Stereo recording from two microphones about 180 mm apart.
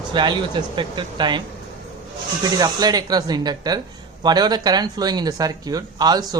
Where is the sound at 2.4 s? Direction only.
20° right (ahead or behind).